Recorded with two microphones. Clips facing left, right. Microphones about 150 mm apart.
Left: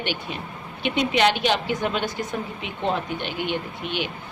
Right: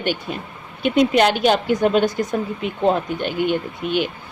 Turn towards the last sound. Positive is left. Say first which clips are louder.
# right 7 dB
turn(degrees=-45)  # may be behind; listen again after turning